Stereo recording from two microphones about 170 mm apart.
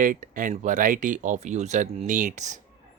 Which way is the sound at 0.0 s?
50° right (ahead or behind).